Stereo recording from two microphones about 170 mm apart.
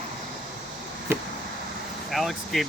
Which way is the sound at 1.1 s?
15° right (ahead or behind).